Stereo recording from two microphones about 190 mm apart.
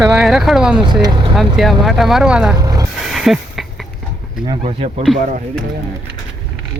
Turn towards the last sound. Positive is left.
turn(degrees=0)  # may be behind; listen again after turning